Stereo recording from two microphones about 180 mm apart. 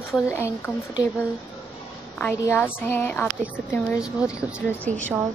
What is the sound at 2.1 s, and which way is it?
A woman's voice, 10° left (ahead or behind).